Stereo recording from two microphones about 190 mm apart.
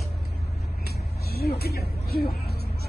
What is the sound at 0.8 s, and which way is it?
Vehicle, 55° left (ahead or behind).